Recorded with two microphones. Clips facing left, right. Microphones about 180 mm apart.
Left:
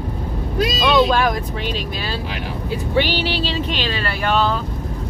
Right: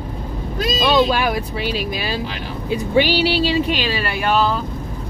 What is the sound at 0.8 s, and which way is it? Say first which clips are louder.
Speech: even; 10° right (ahead or behind).